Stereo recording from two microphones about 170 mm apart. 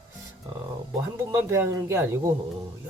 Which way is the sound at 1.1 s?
15° right (ahead or behind).